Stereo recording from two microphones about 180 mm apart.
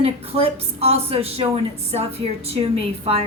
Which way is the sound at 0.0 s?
35° right (ahead or behind).